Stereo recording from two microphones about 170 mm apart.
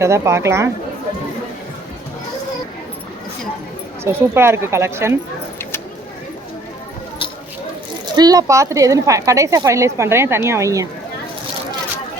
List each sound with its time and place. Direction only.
0.0 s speech: 15° right (ahead or behind)
4.0 s speech: 15° right (ahead or behind)
8.1 s speech: 20° right (ahead or behind)